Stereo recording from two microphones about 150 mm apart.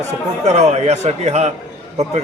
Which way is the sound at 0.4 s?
50° right (ahead or behind).